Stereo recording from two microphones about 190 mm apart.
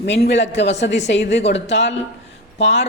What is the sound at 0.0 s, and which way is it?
A woman's voice, 65° left (ahead or behind).